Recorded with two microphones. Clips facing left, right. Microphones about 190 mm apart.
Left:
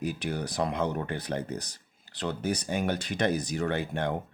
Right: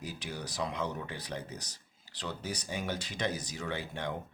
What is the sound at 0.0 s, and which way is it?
Speech, 60° left (ahead or behind).